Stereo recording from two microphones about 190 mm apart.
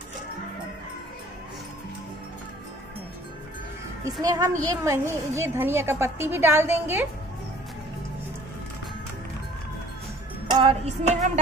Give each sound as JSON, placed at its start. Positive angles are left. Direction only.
{"t": 4.0, "sound": "a woman's voice", "side_deg": -20}
{"t": 10.5, "sound": "music", "side_deg": -30}